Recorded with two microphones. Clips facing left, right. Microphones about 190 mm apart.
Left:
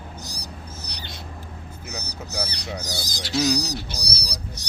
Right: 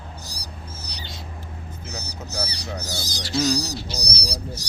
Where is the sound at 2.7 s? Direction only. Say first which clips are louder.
Even; 15° left (ahead or behind).